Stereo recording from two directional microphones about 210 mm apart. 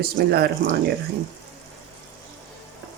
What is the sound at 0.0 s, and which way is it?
Speech, 50° right (ahead or behind).